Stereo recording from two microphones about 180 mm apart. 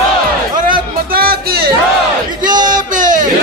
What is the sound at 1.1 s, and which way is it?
Music, 55° right (ahead or behind).